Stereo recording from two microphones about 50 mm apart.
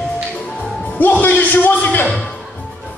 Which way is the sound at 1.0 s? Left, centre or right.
Left.